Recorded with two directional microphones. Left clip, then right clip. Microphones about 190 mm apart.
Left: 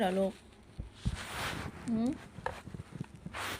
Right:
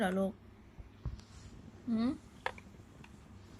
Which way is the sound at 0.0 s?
15° right (ahead or behind).